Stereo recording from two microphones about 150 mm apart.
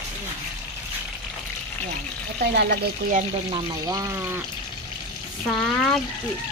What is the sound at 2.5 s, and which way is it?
Speech, 75° right (ahead or behind).